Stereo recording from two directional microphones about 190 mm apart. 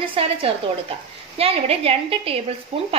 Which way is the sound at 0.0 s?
30° right (ahead or behind).